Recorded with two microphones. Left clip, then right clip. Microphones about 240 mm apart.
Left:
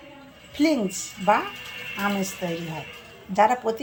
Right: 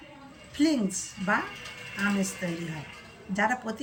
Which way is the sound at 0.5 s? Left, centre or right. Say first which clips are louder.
Left 4 dB; centre.